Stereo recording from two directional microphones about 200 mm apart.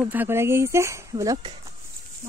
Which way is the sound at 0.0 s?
10° right (ahead or behind).